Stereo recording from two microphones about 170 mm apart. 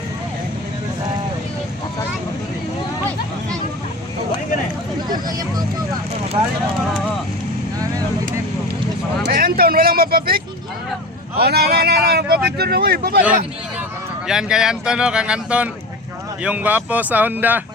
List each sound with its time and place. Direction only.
6.4 s speech: 35° right (ahead or behind)
9.3 s a sound: 60° right (ahead or behind)
11.3 s speech: 65° right (ahead or behind)
14.3 s speech: 5° right (ahead or behind)